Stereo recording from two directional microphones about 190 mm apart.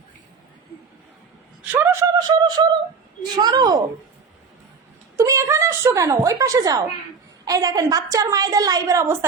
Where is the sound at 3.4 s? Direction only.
20° right (ahead or behind).